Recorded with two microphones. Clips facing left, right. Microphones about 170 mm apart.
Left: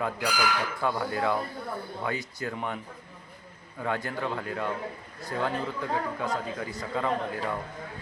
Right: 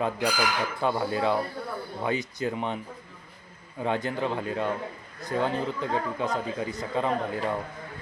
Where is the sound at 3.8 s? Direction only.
20° right (ahead or behind).